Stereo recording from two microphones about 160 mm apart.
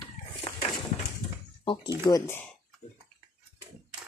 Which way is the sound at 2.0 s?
20° left (ahead or behind).